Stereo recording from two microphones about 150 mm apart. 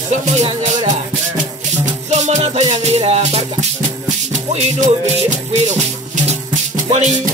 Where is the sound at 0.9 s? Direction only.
55° right (ahead or behind).